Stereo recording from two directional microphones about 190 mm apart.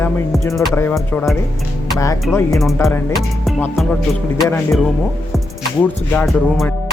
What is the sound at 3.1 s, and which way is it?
Music, centre (ahead or behind).